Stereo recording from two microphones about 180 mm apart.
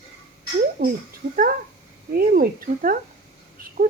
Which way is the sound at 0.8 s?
65° right (ahead or behind).